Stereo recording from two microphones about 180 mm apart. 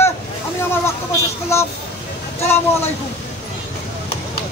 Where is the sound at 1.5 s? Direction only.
15° left (ahead or behind).